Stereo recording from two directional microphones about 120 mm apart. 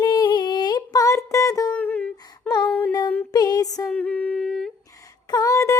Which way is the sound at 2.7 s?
15° left (ahead or behind).